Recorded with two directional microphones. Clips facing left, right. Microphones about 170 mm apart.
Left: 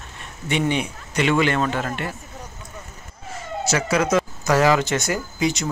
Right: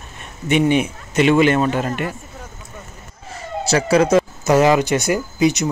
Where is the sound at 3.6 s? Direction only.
35° right (ahead or behind).